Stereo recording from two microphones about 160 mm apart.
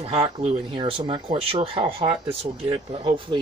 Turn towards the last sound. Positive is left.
turn(degrees=-30)  # may be behind; listen again after turning